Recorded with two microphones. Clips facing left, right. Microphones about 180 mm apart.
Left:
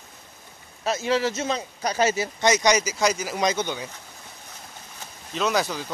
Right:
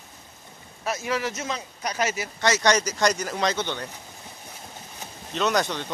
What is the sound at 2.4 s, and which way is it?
Speech, 15° left (ahead or behind).